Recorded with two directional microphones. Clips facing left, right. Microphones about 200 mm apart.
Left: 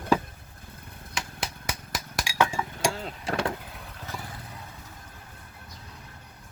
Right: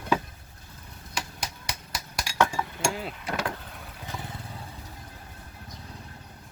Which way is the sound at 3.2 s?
30° left (ahead or behind).